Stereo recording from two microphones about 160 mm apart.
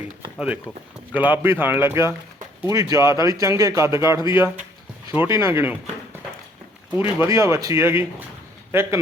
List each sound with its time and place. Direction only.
0.3 s a man's voice: 10° right (ahead or behind)
6.9 s a man's voice: 15° right (ahead or behind)